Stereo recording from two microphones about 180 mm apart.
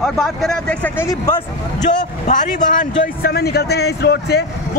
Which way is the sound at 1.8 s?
45° left (ahead or behind).